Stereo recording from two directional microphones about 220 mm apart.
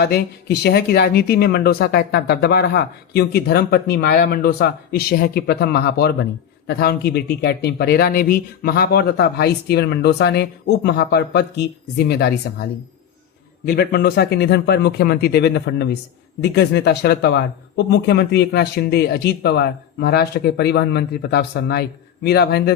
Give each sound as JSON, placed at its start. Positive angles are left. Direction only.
{"t": 0.0, "sound": "speech", "side_deg": 50}
{"t": 13.7, "sound": "speech", "side_deg": 45}